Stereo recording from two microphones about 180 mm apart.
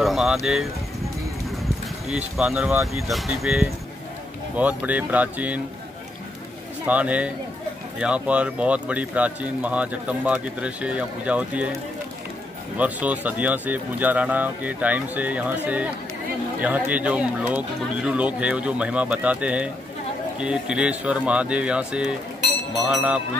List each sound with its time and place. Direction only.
0.0 s vehicle: centre (ahead or behind)
2.0 s speech: centre (ahead or behind)
6.9 s speech: 10° right (ahead or behind)
12.7 s speech: 10° right (ahead or behind)